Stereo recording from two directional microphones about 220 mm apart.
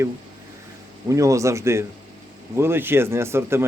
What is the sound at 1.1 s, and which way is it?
Speech, 15° right (ahead or behind).